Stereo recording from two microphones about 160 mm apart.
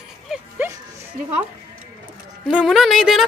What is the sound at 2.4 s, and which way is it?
Speech, 5° right (ahead or behind).